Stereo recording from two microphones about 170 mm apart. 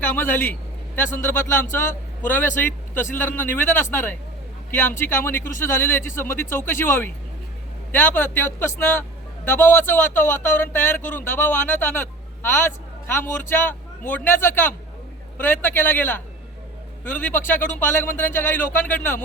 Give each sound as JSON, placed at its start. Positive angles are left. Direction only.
{"t": 0.1, "sound": "a man's voice", "side_deg": 10}